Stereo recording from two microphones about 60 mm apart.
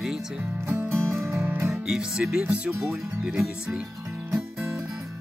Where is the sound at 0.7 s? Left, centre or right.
Right.